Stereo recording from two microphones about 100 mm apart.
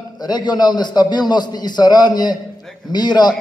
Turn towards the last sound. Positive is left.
turn(degrees=45)  # may be behind; listen again after turning